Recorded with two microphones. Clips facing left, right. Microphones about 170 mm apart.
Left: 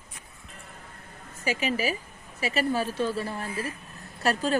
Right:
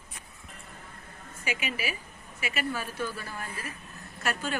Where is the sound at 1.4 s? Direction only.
35° left (ahead or behind).